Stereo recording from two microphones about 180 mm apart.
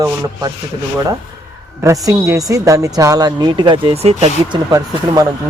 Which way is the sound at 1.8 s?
20° right (ahead or behind).